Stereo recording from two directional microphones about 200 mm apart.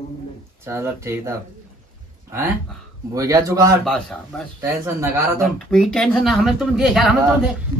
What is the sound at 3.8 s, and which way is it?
Speech, 5° left (ahead or behind).